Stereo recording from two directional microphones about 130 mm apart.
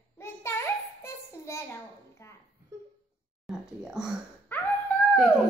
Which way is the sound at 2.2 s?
20° left (ahead or behind).